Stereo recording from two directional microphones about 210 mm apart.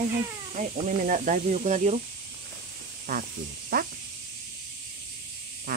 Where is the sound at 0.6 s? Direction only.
35° right (ahead or behind).